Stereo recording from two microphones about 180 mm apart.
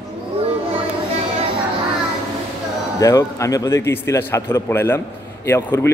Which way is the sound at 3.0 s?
15° left (ahead or behind).